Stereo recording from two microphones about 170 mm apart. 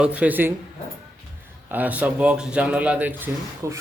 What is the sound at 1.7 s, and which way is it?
A man's voice, 10° right (ahead or behind).